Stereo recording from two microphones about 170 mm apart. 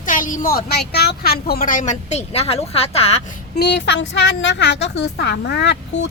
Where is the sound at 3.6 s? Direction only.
85° left.